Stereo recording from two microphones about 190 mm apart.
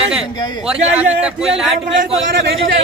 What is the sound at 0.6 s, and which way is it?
Speech, 5° right (ahead or behind).